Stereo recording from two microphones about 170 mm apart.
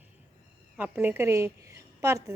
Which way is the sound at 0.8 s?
10° right (ahead or behind).